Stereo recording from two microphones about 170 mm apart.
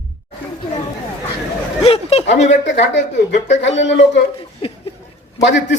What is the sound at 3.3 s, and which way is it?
Speech, 45° left (ahead or behind).